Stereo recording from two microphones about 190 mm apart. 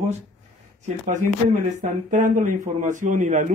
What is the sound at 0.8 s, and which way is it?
Speech, 35° right (ahead or behind).